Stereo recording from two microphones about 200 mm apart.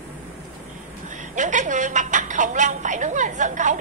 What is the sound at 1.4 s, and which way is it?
A woman's voice, 40° right (ahead or behind).